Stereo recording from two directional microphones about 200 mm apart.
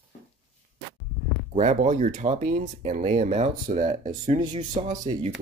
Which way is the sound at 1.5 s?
35° right (ahead or behind).